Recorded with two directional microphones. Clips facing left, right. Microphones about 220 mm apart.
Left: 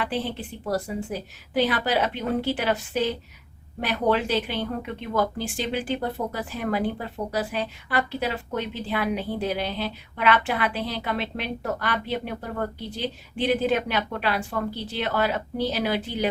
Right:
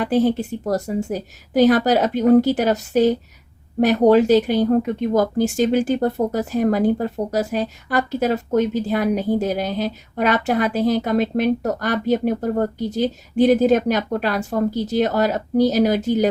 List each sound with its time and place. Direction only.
0.0 s speech: 45° right (ahead or behind)